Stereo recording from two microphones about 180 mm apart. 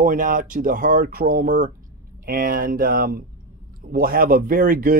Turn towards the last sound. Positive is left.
turn(degrees=-50)  # may be behind; listen again after turning